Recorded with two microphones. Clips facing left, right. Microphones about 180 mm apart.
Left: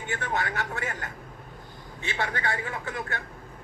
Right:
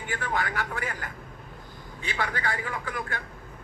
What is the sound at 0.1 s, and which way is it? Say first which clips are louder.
Speech: even; 25° left (ahead or behind).